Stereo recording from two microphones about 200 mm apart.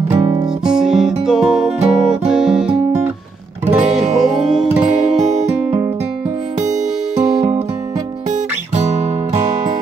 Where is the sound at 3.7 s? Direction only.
Centre (ahead or behind).